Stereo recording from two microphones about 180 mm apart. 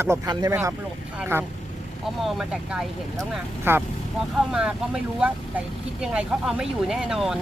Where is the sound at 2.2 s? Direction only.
Centre (ahead or behind).